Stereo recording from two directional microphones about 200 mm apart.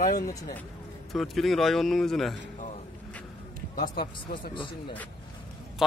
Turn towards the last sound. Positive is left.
turn(degrees=0)  # may be behind; listen again after turning